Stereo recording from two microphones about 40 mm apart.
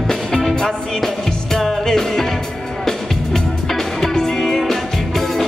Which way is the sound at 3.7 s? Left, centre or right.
Centre.